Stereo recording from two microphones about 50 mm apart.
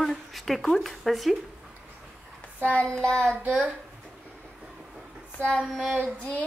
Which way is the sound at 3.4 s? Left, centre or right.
Right.